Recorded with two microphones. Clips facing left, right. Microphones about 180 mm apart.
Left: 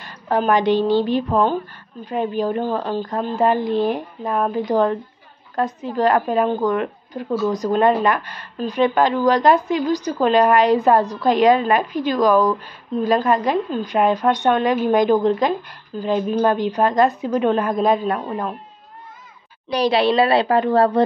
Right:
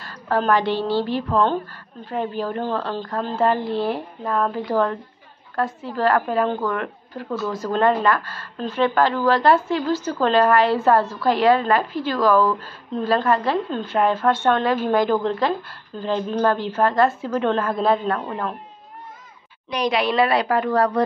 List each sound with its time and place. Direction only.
0.0 s a woman's voice: 20° left (ahead or behind)
19.7 s a woman's voice: 30° left (ahead or behind)